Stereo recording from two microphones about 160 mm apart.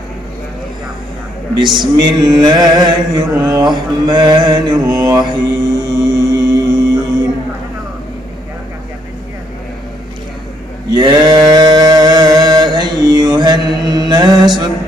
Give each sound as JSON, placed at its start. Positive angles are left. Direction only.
{"t": 1.5, "sound": "male singing", "side_deg": -30}
{"t": 5.9, "sound": "music", "side_deg": -25}
{"t": 10.9, "sound": "a sound", "side_deg": -25}